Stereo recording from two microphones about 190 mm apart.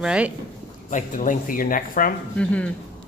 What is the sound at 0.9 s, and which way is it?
Speech, 40° left (ahead or behind).